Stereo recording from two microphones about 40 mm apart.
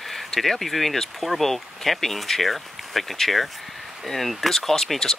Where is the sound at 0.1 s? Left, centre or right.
Centre.